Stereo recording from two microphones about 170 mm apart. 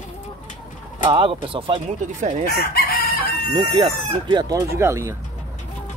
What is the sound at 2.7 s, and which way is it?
Chicken, 65° left (ahead or behind).